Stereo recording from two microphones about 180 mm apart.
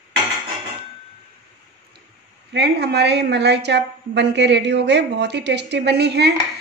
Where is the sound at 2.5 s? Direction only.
70° right (ahead or behind).